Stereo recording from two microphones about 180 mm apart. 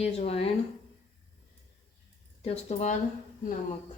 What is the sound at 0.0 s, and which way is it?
Speech, 35° left (ahead or behind).